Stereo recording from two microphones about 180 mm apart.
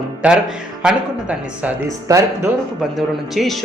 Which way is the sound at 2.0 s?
15° right (ahead or behind).